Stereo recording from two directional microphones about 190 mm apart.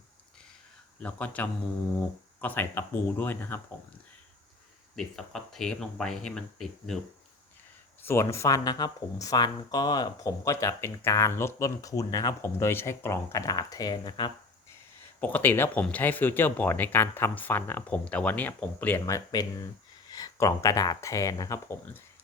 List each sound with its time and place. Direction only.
0.9 s speech: 5° left (ahead or behind)
4.9 s speech: centre (ahead or behind)
8.0 s speech: 15° left (ahead or behind)
15.2 s speech: 10° left (ahead or behind)